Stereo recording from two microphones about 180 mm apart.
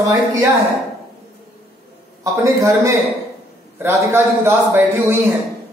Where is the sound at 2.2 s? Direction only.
15° right (ahead or behind).